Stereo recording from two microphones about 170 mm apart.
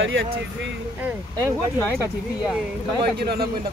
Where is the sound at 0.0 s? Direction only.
90° right.